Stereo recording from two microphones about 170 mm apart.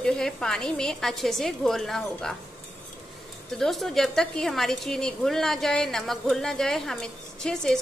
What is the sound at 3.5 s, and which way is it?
A woman's voice, centre (ahead or behind).